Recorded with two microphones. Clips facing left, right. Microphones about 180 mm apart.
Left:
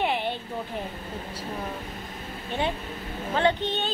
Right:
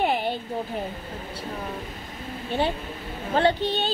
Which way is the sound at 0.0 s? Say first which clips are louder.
Right 3 dB; 40° right (ahead or behind).